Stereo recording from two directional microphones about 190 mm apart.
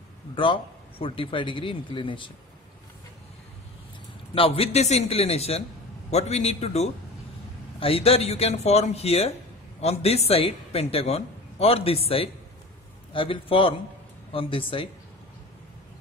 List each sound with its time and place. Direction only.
0.4 s a man's voice: 25° left (ahead or behind)
4.4 s a man's voice: 35° left (ahead or behind)